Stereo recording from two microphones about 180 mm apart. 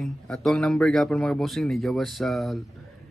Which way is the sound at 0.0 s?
Centre (ahead or behind).